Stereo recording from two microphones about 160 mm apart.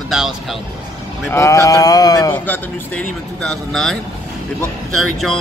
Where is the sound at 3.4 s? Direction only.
5° left (ahead or behind).